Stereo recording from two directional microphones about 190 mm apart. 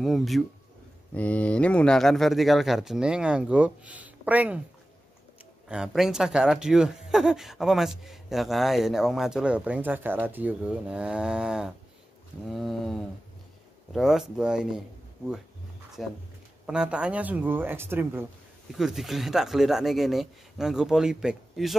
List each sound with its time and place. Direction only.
0.0 s speech: centre (ahead or behind)
5.7 s speech: 5° right (ahead or behind)
16.0 s speech: centre (ahead or behind)